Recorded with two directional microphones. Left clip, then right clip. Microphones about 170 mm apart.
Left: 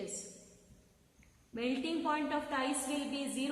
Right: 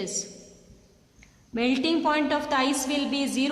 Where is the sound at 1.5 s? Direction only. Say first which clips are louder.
Right 11 dB; 50° right (ahead or behind).